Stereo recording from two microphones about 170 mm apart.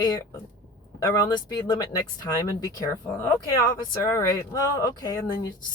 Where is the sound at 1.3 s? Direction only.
25° left (ahead or behind).